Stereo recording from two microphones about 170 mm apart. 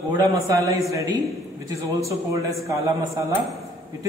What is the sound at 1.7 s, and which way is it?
A man's voice, 20° right (ahead or behind).